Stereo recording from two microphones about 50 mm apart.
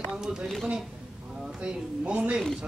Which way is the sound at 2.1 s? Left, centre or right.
Right.